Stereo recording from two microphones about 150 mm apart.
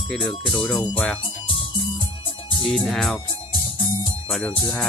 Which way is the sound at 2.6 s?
5° left (ahead or behind).